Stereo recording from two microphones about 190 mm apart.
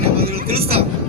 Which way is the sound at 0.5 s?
30° right (ahead or behind).